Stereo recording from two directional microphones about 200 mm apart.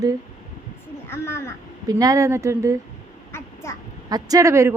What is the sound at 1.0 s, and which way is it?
Speech, 10° left (ahead or behind).